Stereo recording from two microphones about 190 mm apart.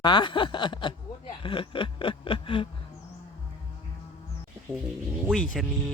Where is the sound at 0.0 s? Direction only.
25° left (ahead or behind).